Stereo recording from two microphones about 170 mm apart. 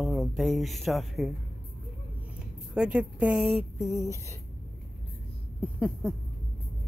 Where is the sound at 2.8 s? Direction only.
5° right (ahead or behind).